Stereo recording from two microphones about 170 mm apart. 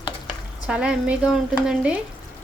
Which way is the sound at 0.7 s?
5° right (ahead or behind).